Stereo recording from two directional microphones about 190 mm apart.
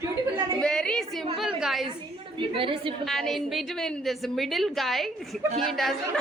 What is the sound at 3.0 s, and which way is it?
A woman's voice, centre (ahead or behind).